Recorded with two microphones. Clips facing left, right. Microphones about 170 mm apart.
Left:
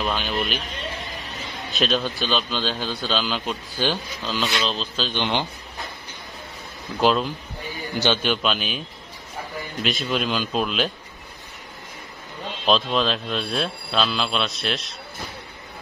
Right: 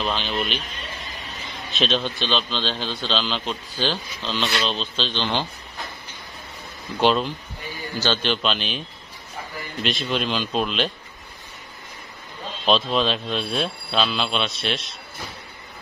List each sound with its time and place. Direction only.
0.0 s speech: 5° left (ahead or behind)
1.7 s a man's voice: centre (ahead or behind)
5.2 s a man's voice: 15° left (ahead or behind)
7.0 s speech: centre (ahead or behind)
7.9 s a man's voice: 15° left (ahead or behind)
9.8 s speech: centre (ahead or behind)
12.6 s speech: centre (ahead or behind)